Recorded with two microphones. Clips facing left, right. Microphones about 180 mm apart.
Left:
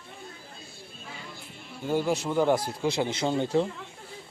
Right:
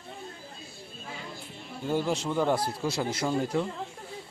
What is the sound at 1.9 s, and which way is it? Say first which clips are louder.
A man's voice: left 2 dB; 10° left (ahead or behind).